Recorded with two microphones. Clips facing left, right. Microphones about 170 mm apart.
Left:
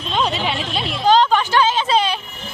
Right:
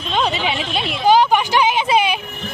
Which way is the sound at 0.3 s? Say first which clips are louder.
Right 1 dB; centre (ahead or behind).